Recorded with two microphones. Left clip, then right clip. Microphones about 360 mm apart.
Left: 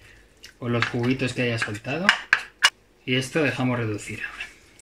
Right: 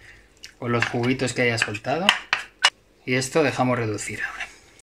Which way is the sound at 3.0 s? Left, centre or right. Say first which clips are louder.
Right 2 dB; centre.